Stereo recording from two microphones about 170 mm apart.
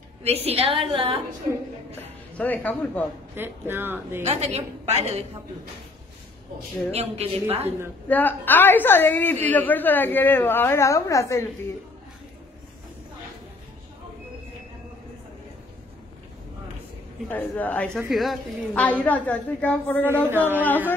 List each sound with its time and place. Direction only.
0.2 s a woman's voice: 35° right (ahead or behind)
2.3 s a woman's voice: 10° left (ahead or behind)
3.3 s speech: 10° right (ahead or behind)
4.2 s a woman's voice: 40° right (ahead or behind)
6.9 s a woman's voice: 35° right (ahead or behind)
8.1 s a woman's voice: 10° left (ahead or behind)
17.3 s a woman's voice: 10° left (ahead or behind)
20.2 s speech: 10° right (ahead or behind)
20.6 s a woman's voice: 10° left (ahead or behind)